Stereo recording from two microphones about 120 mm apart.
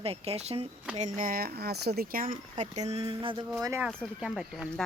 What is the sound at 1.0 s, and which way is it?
Speech, 90° right.